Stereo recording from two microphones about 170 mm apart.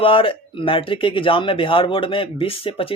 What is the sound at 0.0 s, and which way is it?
Speech, 30° left (ahead or behind).